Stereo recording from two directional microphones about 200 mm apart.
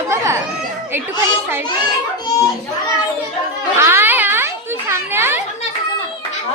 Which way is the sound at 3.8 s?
10° right (ahead or behind).